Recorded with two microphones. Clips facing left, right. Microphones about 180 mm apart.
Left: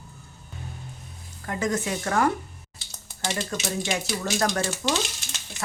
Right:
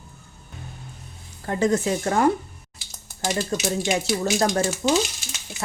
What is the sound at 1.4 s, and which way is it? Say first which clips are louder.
Speech: right 6 dB; 30° right (ahead or behind).